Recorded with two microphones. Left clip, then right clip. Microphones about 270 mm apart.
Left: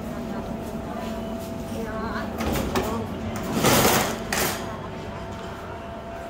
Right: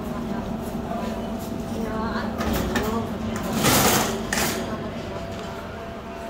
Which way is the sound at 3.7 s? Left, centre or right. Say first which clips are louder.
Even; left.